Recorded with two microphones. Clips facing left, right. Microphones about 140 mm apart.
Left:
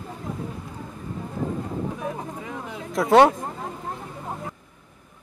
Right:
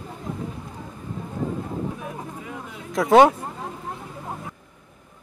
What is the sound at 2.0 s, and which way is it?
Vehicle, 30° left (ahead or behind).